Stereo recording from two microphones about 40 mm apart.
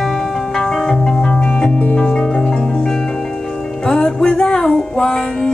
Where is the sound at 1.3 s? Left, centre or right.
Left.